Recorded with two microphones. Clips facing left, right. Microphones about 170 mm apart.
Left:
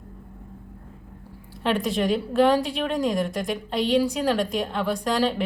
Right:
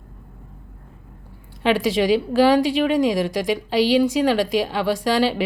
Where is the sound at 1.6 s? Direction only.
90° right.